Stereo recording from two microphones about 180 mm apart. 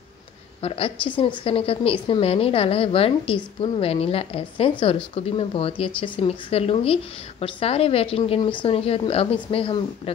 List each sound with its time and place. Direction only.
0.6 s a woman's voice: 30° left (ahead or behind)